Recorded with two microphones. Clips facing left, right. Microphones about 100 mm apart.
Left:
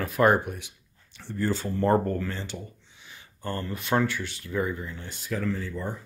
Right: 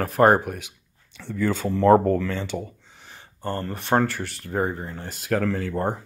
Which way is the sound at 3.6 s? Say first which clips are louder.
Right 4 dB; 45° right (ahead or behind).